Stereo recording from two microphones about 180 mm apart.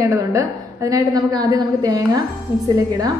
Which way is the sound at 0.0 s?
20° right (ahead or behind).